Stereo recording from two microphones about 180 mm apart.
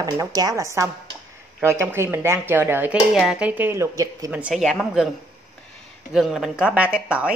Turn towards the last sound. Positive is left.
turn(degrees=-5)  # may be behind; listen again after turning